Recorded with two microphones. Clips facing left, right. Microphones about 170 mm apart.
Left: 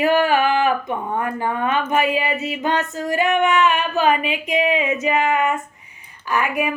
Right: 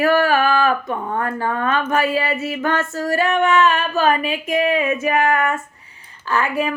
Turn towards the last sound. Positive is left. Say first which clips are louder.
# right 1 dB
turn(degrees=15)  # may be behind; listen again after turning